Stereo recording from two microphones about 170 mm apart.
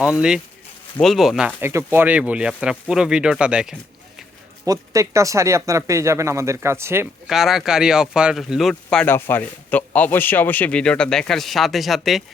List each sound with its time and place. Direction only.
0.2 s speech: 5° right (ahead or behind)
1.6 s speech: 15° right (ahead or behind)
4.6 s speech: 20° right (ahead or behind)
7.3 s speech: centre (ahead or behind)